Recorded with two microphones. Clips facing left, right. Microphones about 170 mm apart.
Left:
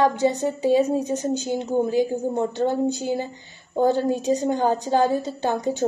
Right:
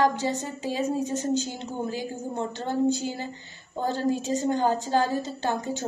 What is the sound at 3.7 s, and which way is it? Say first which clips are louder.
A woman's voice: left 6 dB; 15° left (ahead or behind).